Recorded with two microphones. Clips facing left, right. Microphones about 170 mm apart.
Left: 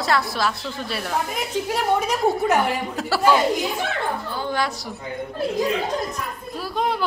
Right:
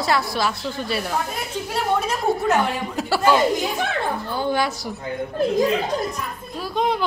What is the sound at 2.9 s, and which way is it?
Speech, centre (ahead or behind).